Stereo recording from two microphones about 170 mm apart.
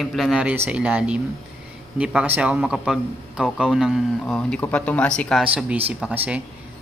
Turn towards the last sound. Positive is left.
turn(degrees=-10)  # may be behind; listen again after turning